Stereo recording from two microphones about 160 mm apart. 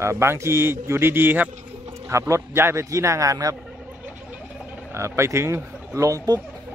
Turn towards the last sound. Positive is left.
turn(degrees=-20)  # may be behind; listen again after turning